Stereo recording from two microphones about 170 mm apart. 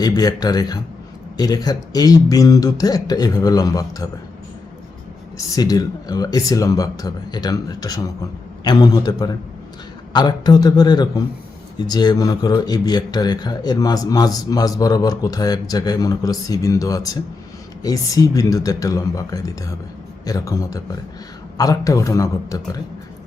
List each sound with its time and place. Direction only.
0.0 s a man's voice: 20° left (ahead or behind)
5.5 s a man's voice: 20° left (ahead or behind)